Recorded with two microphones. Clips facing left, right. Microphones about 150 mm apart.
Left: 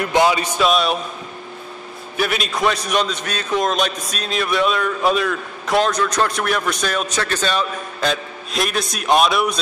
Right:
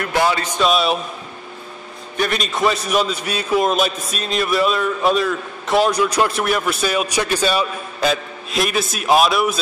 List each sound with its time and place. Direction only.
0.0 s speech: 20° left (ahead or behind)
0.6 s a man's voice: centre (ahead or behind)
2.1 s a man's voice: 5° left (ahead or behind)